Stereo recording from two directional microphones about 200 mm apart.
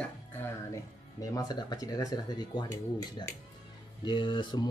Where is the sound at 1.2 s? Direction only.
20° left (ahead or behind).